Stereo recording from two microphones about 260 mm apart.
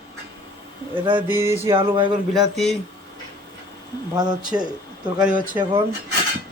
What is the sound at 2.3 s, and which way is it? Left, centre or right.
Speech, centre.